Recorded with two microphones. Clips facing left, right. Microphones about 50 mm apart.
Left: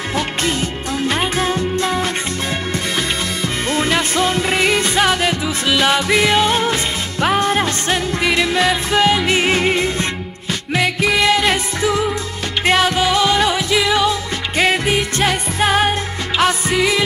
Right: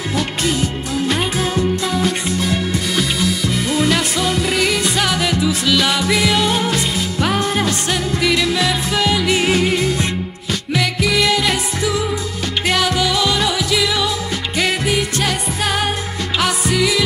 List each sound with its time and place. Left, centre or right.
1.0 s music: centre
3.2 s music: left
4.2 s music: left
11.0 s music: centre